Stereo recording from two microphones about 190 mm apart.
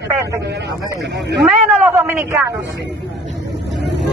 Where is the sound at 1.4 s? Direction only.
5° right (ahead or behind).